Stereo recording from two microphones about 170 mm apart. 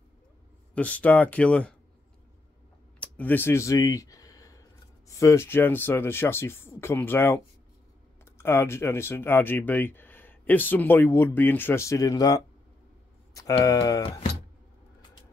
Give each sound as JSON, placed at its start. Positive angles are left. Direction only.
{"t": 0.7, "sound": "speech", "side_deg": 10}
{"t": 3.0, "sound": "speech", "side_deg": 10}